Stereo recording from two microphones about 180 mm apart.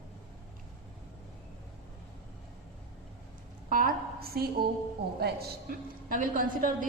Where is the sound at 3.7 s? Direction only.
50° right (ahead or behind).